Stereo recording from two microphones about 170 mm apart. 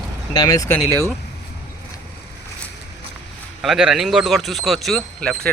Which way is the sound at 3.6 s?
5° right (ahead or behind).